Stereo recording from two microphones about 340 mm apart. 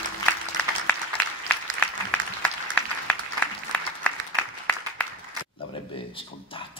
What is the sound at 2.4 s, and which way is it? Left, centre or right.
Applause, centre.